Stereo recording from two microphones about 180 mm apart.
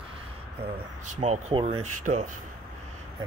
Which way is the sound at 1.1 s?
40° right (ahead or behind).